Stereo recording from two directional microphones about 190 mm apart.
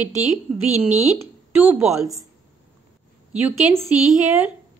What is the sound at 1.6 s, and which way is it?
Speech, 5° right (ahead or behind).